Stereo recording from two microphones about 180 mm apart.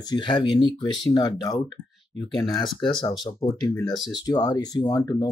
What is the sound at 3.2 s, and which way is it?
Speech, 20° left (ahead or behind).